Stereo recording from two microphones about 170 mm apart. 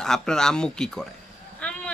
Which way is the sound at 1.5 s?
5° left (ahead or behind).